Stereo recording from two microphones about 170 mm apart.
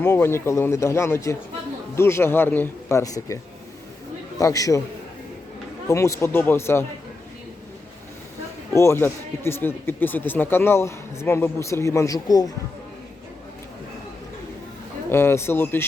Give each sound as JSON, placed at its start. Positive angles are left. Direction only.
{"t": 0.0, "sound": "speech", "side_deg": 15}
{"t": 4.4, "sound": "a man's voice", "side_deg": 20}
{"t": 5.9, "sound": "speech", "side_deg": 15}
{"t": 8.7, "sound": "speech", "side_deg": 15}
{"t": 15.1, "sound": "speech", "side_deg": 15}